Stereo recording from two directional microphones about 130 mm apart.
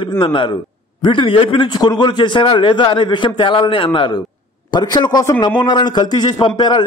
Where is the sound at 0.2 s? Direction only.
40° left (ahead or behind).